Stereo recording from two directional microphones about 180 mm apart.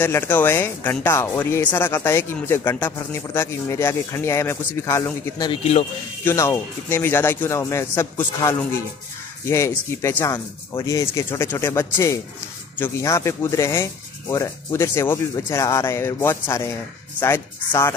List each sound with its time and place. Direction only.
0.0 s speech: 10° left (ahead or behind)
5.5 s speech: 35° left (ahead or behind)
6.2 s speech: 15° left (ahead or behind)